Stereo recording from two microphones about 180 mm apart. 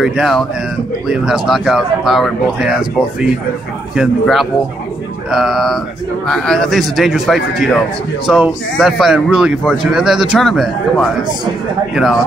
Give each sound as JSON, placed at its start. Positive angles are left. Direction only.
{"t": 0.0, "sound": "speech", "side_deg": 0}